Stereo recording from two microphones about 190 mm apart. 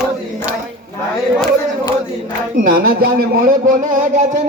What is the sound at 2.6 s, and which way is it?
Speech, 45° right (ahead or behind).